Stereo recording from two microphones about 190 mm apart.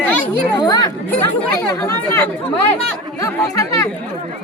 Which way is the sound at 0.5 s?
20° left (ahead or behind).